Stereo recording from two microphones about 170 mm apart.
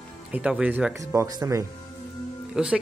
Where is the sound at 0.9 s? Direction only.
20° right (ahead or behind).